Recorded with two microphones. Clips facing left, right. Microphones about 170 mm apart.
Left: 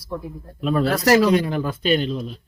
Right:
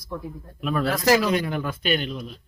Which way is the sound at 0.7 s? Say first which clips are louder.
Left 3 dB; 35° left (ahead or behind).